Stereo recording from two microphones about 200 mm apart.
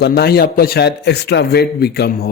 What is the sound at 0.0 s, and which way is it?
Speech, 50° left (ahead or behind).